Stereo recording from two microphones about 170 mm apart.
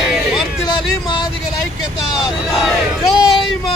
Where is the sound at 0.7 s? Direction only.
25° left (ahead or behind).